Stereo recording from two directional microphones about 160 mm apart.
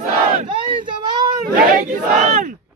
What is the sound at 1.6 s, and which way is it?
Battle cry, 55° right (ahead or behind).